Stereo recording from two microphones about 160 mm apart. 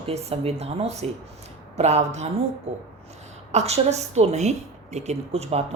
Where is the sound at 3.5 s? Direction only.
40° right (ahead or behind).